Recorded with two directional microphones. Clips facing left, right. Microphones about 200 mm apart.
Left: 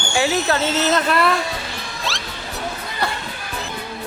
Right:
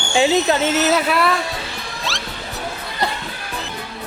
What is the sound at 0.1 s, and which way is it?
Speech, 20° right (ahead or behind).